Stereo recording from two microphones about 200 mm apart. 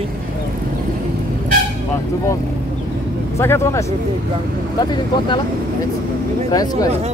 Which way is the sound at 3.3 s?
15° left (ahead or behind).